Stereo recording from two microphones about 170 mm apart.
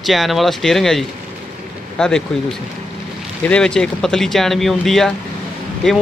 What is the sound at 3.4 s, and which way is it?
Speech, 5° left (ahead or behind).